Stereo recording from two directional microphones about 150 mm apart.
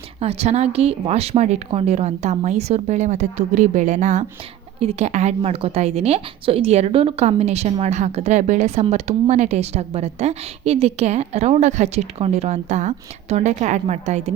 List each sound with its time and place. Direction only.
0.2 s a woman's voice: 45° right (ahead or behind)